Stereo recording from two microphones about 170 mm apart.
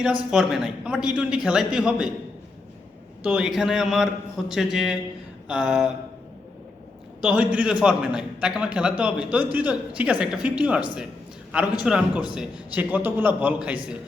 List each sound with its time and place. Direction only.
0.3 s a man's voice: 5° right (ahead or behind)
3.2 s a man's voice: 5° right (ahead or behind)
7.2 s a man's voice: 5° right (ahead or behind)